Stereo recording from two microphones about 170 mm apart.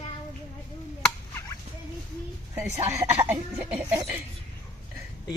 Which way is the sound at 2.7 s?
40° right (ahead or behind).